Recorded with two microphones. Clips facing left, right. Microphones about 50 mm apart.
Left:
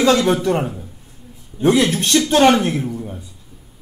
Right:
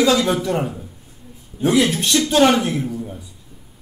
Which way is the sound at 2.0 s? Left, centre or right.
Left.